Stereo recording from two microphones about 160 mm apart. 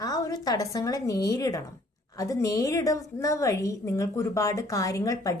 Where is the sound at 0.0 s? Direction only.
25° left (ahead or behind).